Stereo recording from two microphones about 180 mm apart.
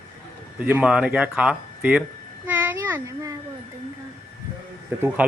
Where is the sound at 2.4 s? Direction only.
10° right (ahead or behind).